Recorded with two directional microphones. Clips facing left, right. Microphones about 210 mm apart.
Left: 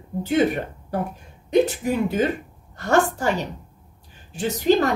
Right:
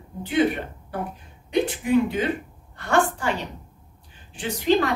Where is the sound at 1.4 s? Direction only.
40° left (ahead or behind).